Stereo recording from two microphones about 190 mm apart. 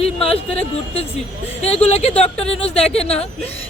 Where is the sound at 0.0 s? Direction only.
30° left (ahead or behind).